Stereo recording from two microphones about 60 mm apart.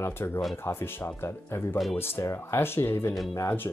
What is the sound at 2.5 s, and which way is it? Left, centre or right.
Speech, left.